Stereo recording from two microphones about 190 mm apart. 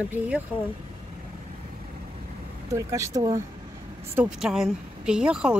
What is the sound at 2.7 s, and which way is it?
Speech, 15° right (ahead or behind).